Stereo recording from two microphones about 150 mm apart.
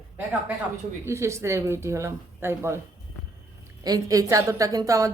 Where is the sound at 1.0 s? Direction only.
20° right (ahead or behind).